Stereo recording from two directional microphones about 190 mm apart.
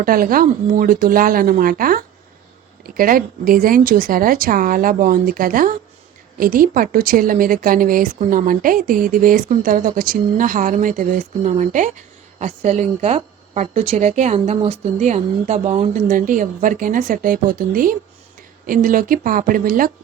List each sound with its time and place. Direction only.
0.0 s a woman's voice: 50° right (ahead or behind); by 15.9 s 35° right (ahead or behind)
16.0 s a woman's voice: 45° right (ahead or behind)